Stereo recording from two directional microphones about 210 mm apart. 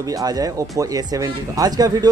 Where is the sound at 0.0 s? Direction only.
15° right (ahead or behind).